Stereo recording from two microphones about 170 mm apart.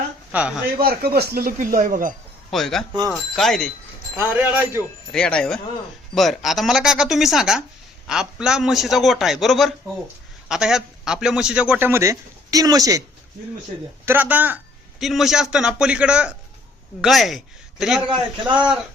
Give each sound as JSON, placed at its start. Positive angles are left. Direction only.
{"t": 0.3, "sound": "speech", "side_deg": -5}
{"t": 0.8, "sound": "speech", "side_deg": -65}
{"t": 2.5, "sound": "speech", "side_deg": 0}
{"t": 4.2, "sound": "a man's voice", "side_deg": -10}
{"t": 5.1, "sound": "a man's voice", "side_deg": 5}
{"t": 14.0, "sound": "a man's voice", "side_deg": -10}